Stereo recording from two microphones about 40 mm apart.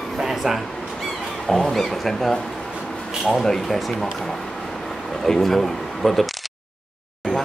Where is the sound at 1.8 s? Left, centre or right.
Centre.